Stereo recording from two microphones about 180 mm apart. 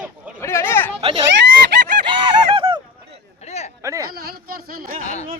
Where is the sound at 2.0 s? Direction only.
30° right (ahead or behind).